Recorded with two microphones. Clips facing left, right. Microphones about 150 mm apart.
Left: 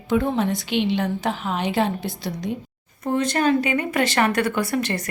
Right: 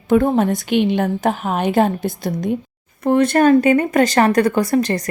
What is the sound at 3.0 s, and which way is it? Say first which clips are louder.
A woman's voice: right 7 dB; 60° right (ahead or behind).